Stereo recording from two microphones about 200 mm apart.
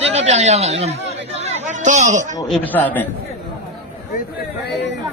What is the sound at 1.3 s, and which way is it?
Chatter, 35° right (ahead or behind).